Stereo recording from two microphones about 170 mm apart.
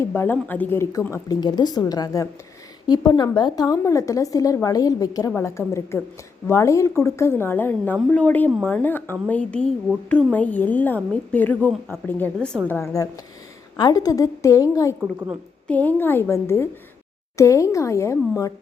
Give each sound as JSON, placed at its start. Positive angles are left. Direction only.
{"t": 0.0, "sound": "a woman's voice", "side_deg": 15}
{"t": 15.6, "sound": "a woman's voice", "side_deg": 10}